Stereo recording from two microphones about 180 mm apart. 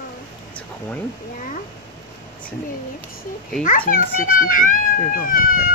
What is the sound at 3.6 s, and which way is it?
A child's voice, 50° left (ahead or behind).